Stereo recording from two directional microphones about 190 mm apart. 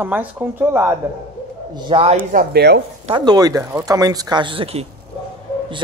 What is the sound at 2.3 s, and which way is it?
Speech, 60° right (ahead or behind).